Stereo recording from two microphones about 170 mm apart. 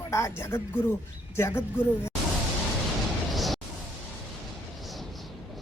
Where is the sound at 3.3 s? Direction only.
Centre (ahead or behind).